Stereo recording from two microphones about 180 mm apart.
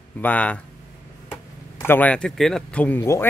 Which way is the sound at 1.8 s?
10° left (ahead or behind).